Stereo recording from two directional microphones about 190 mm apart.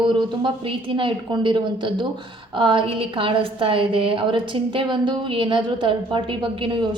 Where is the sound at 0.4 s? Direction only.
25° right (ahead or behind).